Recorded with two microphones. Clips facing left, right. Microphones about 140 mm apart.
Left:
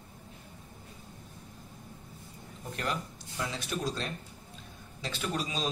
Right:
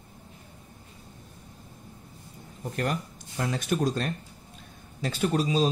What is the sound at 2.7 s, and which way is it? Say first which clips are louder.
A man's voice: right 5 dB; 50° right (ahead or behind).